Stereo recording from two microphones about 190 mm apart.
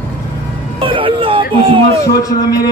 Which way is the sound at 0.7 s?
25° right (ahead or behind).